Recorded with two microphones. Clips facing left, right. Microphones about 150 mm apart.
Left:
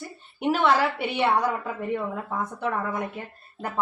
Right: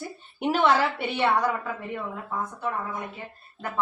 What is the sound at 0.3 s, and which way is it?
Speech, 5° left (ahead or behind).